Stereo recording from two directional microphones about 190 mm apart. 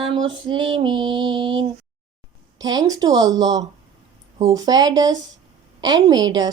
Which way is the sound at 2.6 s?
20° right (ahead or behind).